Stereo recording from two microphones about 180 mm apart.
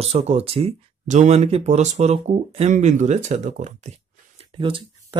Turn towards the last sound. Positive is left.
turn(degrees=-30)  # may be behind; listen again after turning